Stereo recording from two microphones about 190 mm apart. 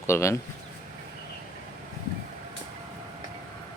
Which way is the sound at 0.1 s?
15° left (ahead or behind).